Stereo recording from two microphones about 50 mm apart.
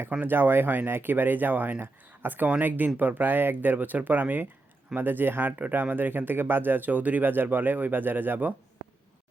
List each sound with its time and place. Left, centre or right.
0.2 s speech: right